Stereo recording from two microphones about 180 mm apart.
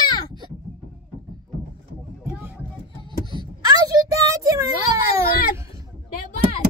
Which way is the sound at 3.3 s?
20° right (ahead or behind).